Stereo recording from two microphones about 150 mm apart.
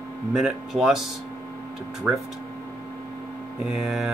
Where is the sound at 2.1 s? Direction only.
10° right (ahead or behind).